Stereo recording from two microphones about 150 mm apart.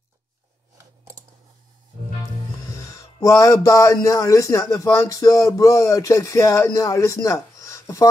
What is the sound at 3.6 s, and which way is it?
Speech, 20° left (ahead or behind).